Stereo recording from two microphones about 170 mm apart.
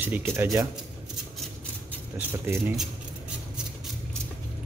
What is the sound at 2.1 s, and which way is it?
Speech, 15° right (ahead or behind).